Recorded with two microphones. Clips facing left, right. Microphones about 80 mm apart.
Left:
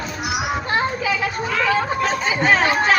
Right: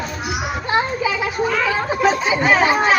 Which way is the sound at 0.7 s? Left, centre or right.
Centre.